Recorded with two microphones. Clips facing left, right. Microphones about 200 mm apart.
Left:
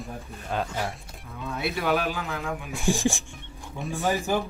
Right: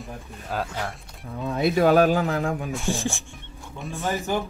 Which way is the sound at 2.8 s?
15° left (ahead or behind).